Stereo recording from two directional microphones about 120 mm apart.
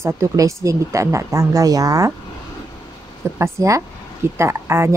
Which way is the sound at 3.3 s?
25° right (ahead or behind).